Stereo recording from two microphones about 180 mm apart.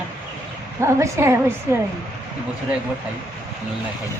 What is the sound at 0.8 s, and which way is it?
Speech, 15° right (ahead or behind).